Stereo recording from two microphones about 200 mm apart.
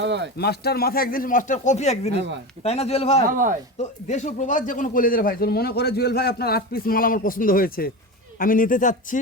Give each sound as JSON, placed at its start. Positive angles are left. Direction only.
{"t": 0.0, "sound": "speech", "side_deg": -60}
{"t": 0.3, "sound": "a man's voice", "side_deg": 55}